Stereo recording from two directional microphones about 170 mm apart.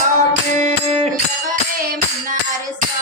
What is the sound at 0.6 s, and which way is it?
Music, 40° right (ahead or behind).